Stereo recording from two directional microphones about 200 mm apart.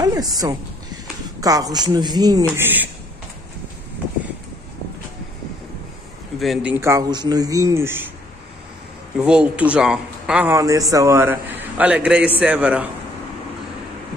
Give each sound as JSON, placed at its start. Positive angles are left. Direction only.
{"t": 0.0, "sound": "a sound", "side_deg": -20}
{"t": 1.4, "sound": "a man's voice", "side_deg": -15}
{"t": 6.4, "sound": "a man's voice", "side_deg": -5}
{"t": 9.2, "sound": "a man's voice", "side_deg": -5}